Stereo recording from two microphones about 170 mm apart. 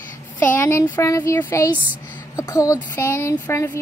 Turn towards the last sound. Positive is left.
turn(degrees=15)  # may be behind; listen again after turning